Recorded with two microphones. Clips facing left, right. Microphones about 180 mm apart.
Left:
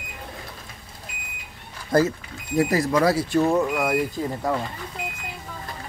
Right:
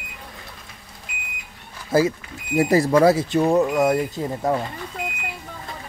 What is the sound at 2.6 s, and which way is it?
Speech, 30° right (ahead or behind).